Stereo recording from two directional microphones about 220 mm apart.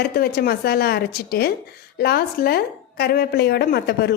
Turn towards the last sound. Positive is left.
turn(degrees=45)  # may be behind; listen again after turning